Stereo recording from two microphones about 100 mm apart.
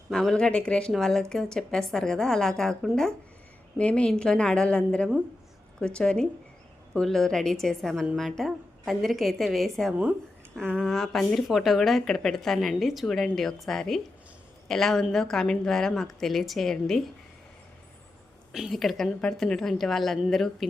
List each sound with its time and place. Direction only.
0.1 s speech: 5° left (ahead or behind)
10.0 s a sound: 10° right (ahead or behind)
10.6 s speech: 5° left (ahead or behind)
18.5 s speech: centre (ahead or behind)